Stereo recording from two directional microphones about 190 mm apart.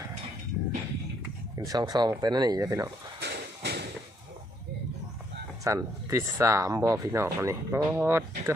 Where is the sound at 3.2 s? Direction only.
60° right (ahead or behind).